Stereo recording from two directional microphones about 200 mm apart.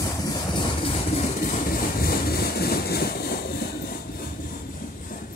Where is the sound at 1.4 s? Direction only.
45° left (ahead or behind).